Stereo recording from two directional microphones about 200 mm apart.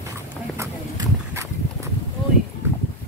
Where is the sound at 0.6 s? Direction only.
15° right (ahead or behind).